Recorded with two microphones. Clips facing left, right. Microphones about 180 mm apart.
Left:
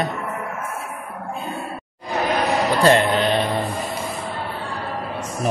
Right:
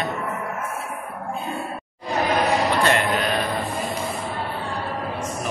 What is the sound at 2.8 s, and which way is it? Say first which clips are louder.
Speech: left 5 dB; 30° left (ahead or behind).